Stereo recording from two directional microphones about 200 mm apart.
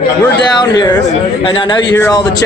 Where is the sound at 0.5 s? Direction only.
20° left (ahead or behind).